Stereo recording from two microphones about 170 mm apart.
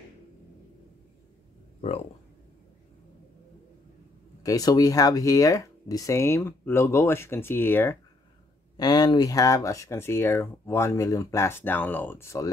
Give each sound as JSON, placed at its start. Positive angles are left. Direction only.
{"t": 4.4, "sound": "speech", "side_deg": 20}
{"t": 8.7, "sound": "speech", "side_deg": 25}